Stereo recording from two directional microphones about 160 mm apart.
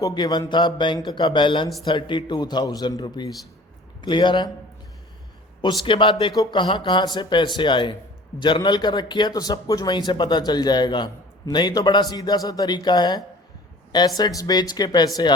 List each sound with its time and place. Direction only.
0.0 s a man's voice: 25° left (ahead or behind)
5.8 s a man's voice: 30° left (ahead or behind)